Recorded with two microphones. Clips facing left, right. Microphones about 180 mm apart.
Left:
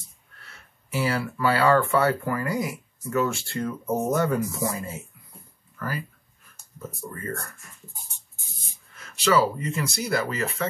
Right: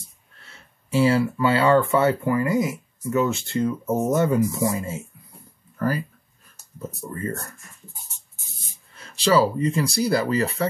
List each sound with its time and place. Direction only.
0.5 s speech: 25° right (ahead or behind)
5.8 s speech: 40° right (ahead or behind)
7.1 s speech: 25° right (ahead or behind)
8.9 s speech: 30° right (ahead or behind)